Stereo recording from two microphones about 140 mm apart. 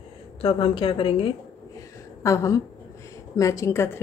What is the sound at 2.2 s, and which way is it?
Speech, 20° left (ahead or behind).